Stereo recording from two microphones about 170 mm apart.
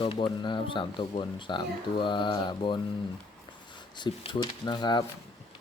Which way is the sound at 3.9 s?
25° left (ahead or behind).